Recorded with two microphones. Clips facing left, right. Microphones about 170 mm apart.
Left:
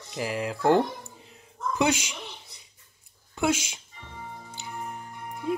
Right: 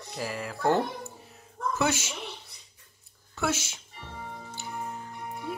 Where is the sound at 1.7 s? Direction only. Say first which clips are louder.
Left 4 dB; 15° left (ahead or behind).